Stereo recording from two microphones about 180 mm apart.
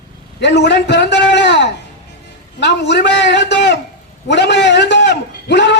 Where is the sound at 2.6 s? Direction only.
75° left (ahead or behind).